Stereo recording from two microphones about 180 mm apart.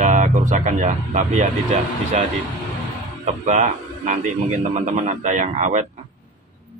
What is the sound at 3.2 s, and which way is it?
A man's voice, 40° right (ahead or behind).